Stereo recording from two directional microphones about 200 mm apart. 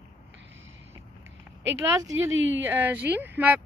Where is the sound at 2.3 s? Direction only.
70° right (ahead or behind).